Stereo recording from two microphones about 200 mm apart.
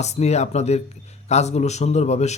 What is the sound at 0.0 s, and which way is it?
Speech, 35° left (ahead or behind).